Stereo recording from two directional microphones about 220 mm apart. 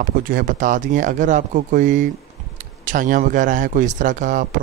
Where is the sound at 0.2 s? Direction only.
40° right (ahead or behind).